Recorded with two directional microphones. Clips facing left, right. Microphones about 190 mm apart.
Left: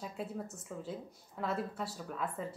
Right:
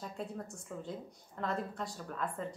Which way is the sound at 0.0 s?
5° left (ahead or behind).